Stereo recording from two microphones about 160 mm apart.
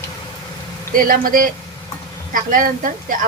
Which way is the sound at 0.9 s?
60° right (ahead or behind).